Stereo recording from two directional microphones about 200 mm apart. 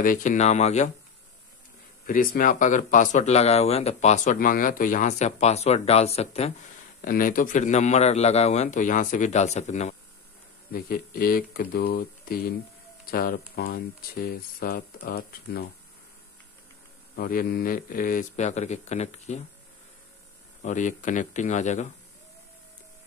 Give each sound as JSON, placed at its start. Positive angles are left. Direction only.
{"t": 0.0, "sound": "speech", "side_deg": 40}
{"t": 2.0, "sound": "speech", "side_deg": 45}
{"t": 7.0, "sound": "speech", "side_deg": 45}
{"t": 10.7, "sound": "speech", "side_deg": 45}
{"t": 17.1, "sound": "speech", "side_deg": 45}
{"t": 20.6, "sound": "speech", "side_deg": 40}